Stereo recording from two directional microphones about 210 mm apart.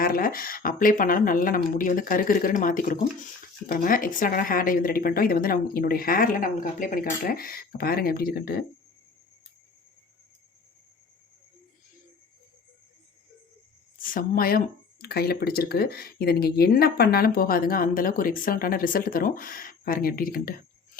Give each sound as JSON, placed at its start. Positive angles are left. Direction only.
{"t": 0.0, "sound": "speech", "side_deg": 45}
{"t": 14.0, "sound": "speech", "side_deg": 40}